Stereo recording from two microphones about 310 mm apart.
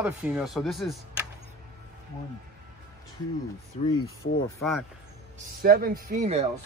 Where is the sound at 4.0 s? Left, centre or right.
Left.